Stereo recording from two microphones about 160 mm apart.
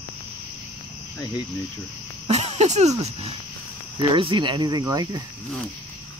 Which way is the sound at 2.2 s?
45° right (ahead or behind).